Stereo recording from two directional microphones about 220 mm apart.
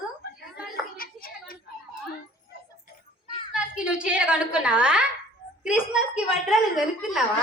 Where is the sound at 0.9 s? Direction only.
40° left (ahead or behind).